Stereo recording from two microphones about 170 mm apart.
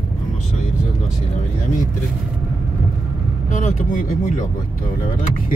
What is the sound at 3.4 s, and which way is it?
Speech, 50° left (ahead or behind).